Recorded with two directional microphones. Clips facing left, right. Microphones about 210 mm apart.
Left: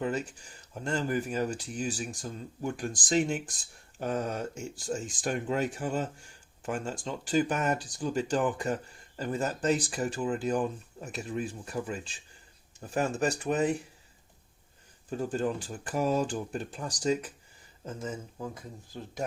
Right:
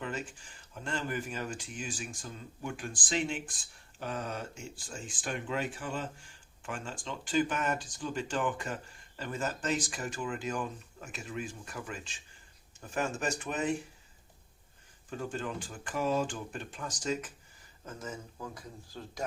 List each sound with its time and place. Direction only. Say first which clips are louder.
0.0 s speech: left 7 dB; 40° left (ahead or behind)
15.1 s speech: left 6 dB; 40° left (ahead or behind)